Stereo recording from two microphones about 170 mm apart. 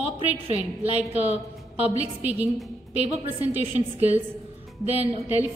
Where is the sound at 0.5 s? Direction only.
40° right (ahead or behind).